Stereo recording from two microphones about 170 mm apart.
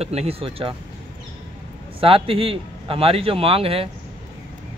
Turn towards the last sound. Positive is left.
turn(degrees=-35)  # may be behind; listen again after turning